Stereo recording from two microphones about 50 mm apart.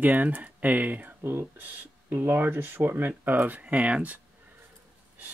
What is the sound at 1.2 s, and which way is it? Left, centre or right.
Speech, right.